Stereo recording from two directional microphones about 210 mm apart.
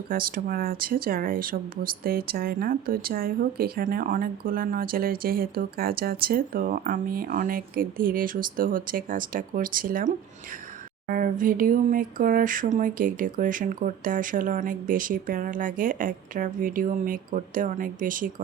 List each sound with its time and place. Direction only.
0.1 s speech: 45° right (ahead or behind)
11.1 s speech: 40° right (ahead or behind)